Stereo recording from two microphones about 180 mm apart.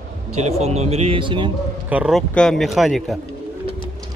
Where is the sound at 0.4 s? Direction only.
35° right (ahead or behind).